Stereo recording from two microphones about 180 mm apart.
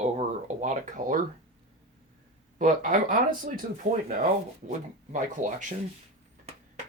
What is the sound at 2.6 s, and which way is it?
Speech, 45° right (ahead or behind).